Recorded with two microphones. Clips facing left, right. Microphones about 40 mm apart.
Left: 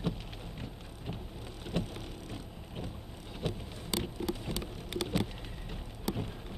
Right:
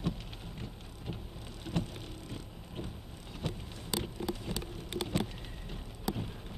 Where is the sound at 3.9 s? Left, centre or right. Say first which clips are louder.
Left 1 dB; centre.